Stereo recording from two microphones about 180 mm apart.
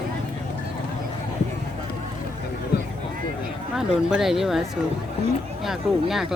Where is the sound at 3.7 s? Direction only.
5° right (ahead or behind).